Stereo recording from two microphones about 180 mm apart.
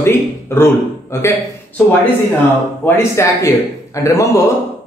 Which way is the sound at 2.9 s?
15° left (ahead or behind).